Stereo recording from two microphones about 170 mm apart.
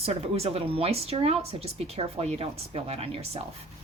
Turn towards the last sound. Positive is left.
turn(degrees=-35)  # may be behind; listen again after turning